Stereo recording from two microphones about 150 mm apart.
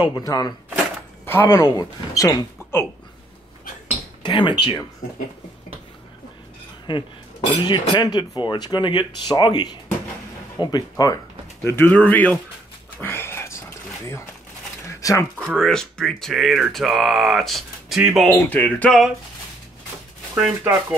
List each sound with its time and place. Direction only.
0.0 s speech: 25° left (ahead or behind)
1.2 s speech: 15° left (ahead or behind)
4.2 s speech: 30° left (ahead or behind)
6.9 s speech: 30° left (ahead or behind)
11.6 s speech: 15° left (ahead or behind)
13.0 s a sound: 15° left (ahead or behind)
14.9 s a sound: 20° left (ahead or behind)
15.3 s speech: 5° left (ahead or behind)
18.4 s speech: 10° left (ahead or behind)
20.3 s speech: 5° right (ahead or behind)